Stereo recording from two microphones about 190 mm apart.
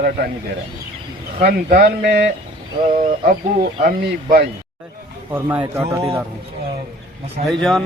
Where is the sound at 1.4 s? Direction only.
55° right (ahead or behind).